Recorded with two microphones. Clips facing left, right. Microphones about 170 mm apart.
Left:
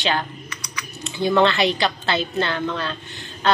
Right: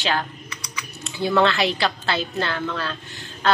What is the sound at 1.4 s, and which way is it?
Speech, centre (ahead or behind).